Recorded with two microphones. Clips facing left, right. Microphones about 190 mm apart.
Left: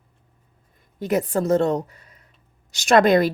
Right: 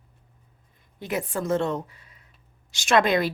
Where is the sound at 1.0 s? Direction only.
40° left (ahead or behind).